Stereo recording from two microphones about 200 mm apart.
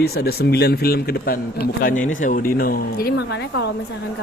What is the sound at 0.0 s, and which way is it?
Speech, 50° left (ahead or behind).